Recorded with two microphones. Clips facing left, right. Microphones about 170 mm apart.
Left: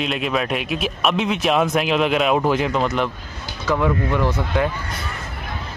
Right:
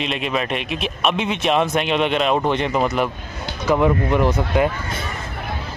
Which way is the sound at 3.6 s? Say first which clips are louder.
Right 3 dB; 20° right (ahead or behind).